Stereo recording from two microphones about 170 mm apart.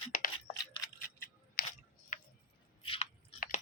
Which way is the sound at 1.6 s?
60° left (ahead or behind).